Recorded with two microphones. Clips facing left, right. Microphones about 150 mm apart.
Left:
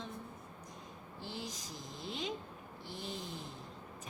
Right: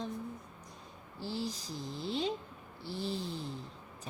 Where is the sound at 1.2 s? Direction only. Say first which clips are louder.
Right 7 dB; 35° right (ahead or behind).